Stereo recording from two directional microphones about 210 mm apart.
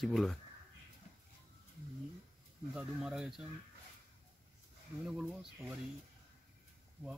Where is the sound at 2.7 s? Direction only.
5° right (ahead or behind).